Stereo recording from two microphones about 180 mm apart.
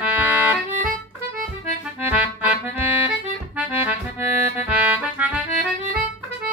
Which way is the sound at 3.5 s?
5° right (ahead or behind).